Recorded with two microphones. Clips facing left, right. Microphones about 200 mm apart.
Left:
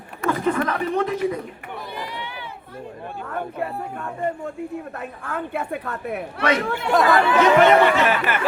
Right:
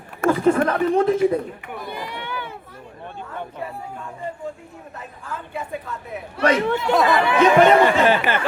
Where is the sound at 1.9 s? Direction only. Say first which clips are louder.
Right 2 dB; 50° right (ahead or behind).